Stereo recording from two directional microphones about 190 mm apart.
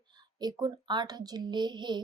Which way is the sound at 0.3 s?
20° right (ahead or behind).